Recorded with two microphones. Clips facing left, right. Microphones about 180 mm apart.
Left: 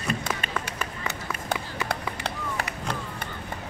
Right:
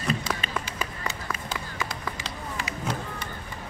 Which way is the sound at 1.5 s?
65° left (ahead or behind).